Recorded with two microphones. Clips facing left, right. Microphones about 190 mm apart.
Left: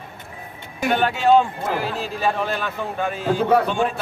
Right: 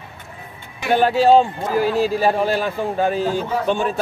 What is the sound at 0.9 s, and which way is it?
A man's voice, 35° right (ahead or behind).